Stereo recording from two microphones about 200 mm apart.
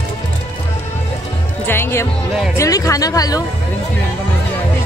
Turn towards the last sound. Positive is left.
turn(degrees=20)  # may be behind; listen again after turning